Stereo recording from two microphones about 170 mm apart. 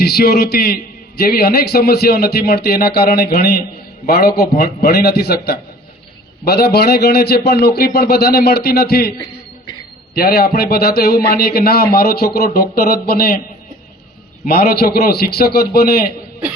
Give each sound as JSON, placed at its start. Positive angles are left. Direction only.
{"t": 0.0, "sound": "a man's voice", "side_deg": 70}
{"t": 10.2, "sound": "a man's voice", "side_deg": 65}
{"t": 14.4, "sound": "a man's voice", "side_deg": 65}